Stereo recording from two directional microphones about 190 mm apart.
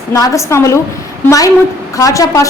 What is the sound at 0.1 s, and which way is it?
Speech, 15° left (ahead or behind).